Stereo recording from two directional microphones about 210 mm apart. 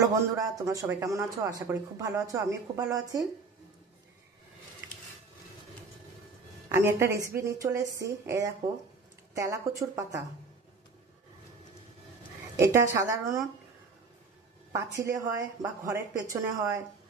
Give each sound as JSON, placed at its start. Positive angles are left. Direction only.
{"t": 0.0, "sound": "speech", "side_deg": -15}
{"t": 6.7, "sound": "speech", "side_deg": -10}
{"t": 12.5, "sound": "speech", "side_deg": -15}
{"t": 14.7, "sound": "speech", "side_deg": -15}